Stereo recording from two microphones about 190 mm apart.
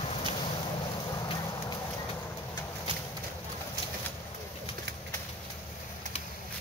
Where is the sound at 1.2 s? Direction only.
20° left (ahead or behind).